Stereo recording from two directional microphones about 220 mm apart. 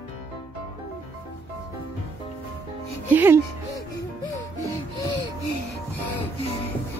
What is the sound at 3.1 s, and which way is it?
Speech, 10° right (ahead or behind).